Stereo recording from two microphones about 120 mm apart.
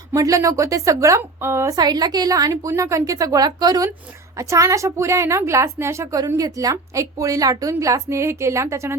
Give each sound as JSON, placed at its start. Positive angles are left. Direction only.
{"t": 0.1, "sound": "a woman's voice", "side_deg": -25}
{"t": 1.8, "sound": "a woman's voice", "side_deg": -35}